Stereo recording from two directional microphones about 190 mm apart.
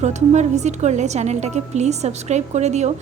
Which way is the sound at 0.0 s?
35° right (ahead or behind).